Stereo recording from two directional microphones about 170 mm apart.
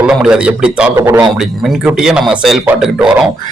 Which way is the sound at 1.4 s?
Centre (ahead or behind).